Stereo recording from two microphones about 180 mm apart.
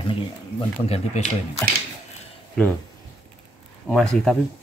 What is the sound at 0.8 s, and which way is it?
Speech, 35° left (ahead or behind).